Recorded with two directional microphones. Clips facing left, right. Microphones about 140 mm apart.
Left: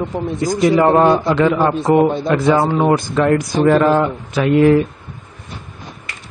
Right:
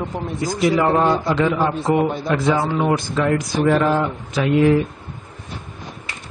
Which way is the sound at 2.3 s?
60° left (ahead or behind).